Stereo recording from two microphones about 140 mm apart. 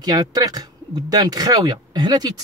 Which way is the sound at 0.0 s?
30° right (ahead or behind).